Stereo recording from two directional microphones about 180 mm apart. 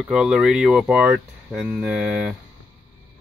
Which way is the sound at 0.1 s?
5° right (ahead or behind).